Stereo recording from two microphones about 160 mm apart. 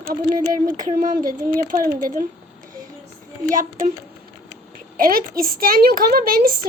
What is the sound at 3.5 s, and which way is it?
Speech, 55° right (ahead or behind).